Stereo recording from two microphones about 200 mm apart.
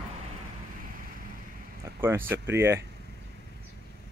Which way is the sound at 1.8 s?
15° right (ahead or behind).